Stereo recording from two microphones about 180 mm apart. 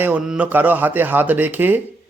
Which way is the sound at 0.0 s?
5° right (ahead or behind).